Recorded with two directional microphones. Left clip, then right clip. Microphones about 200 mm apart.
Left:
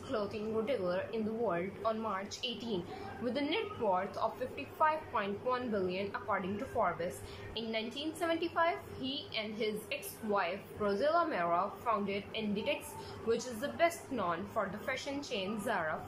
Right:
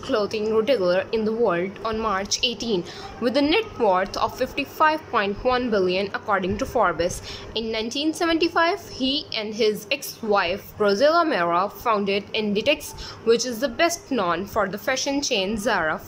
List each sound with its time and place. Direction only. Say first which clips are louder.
0.1 s a woman's voice: right 14 dB; 60° right (ahead or behind)